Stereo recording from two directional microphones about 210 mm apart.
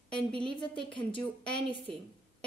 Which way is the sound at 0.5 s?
25° left (ahead or behind).